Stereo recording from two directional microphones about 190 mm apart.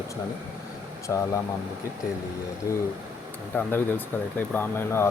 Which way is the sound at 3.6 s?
10° left (ahead or behind).